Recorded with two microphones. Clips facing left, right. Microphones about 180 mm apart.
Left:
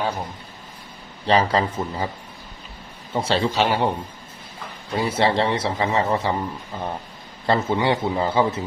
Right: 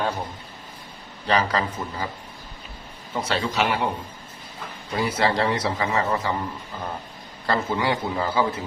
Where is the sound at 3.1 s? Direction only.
30° left (ahead or behind).